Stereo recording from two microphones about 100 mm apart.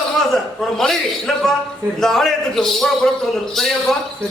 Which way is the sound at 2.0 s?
5° left (ahead or behind).